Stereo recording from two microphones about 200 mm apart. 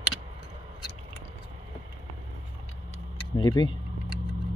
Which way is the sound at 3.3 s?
20° left (ahead or behind).